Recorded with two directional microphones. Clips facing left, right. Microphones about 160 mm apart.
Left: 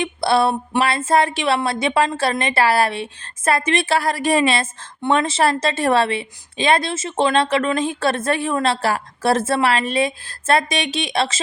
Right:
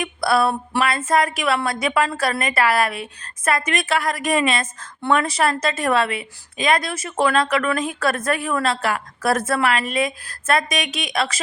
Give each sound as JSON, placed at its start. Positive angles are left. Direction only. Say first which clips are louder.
{"t": 0.0, "sound": "speech", "louder": "left 2 dB", "side_deg": 25}